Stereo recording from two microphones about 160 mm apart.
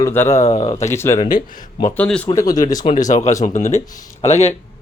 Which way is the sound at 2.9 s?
45° left (ahead or behind).